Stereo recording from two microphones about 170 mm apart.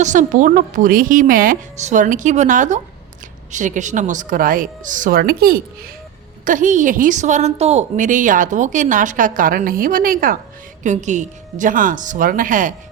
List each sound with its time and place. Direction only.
0.0 s a woman's voice: 45° right (ahead or behind); by 5.9 s 65° right (ahead or behind)
6.4 s a woman's voice: 50° right (ahead or behind)
10.8 s a woman's voice: 45° right (ahead or behind)